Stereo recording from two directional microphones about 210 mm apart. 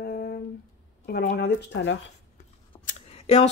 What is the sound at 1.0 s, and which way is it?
Speech, 50° left (ahead or behind).